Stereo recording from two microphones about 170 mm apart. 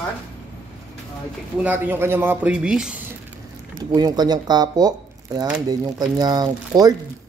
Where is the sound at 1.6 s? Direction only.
10° right (ahead or behind).